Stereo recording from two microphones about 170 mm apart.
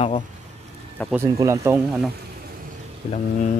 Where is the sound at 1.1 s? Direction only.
15° right (ahead or behind).